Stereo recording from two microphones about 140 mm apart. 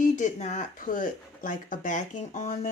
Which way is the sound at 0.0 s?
65° left (ahead or behind).